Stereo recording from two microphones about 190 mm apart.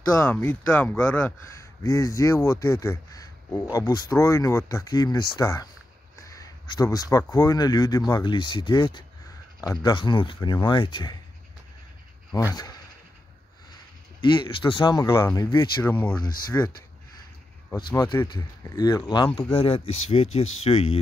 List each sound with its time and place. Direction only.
0.1 s speech: 10° left (ahead or behind)
12.3 s speech: 20° left (ahead or behind)
14.2 s speech: 25° left (ahead or behind)
15.9 s speech: 10° left (ahead or behind)
17.9 s speech: 20° left (ahead or behind)